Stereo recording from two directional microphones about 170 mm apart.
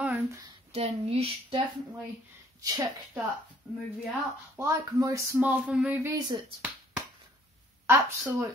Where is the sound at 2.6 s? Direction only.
20° right (ahead or behind).